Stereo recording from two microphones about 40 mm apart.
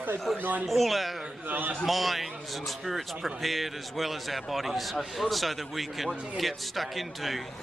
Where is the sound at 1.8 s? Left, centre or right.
Centre.